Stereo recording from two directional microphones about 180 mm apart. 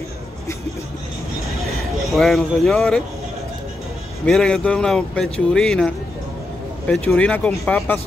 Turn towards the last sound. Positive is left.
turn(degrees=5)  # may be behind; listen again after turning